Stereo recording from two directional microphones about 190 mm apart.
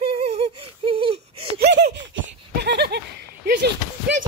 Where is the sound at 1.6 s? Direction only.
60° right (ahead or behind).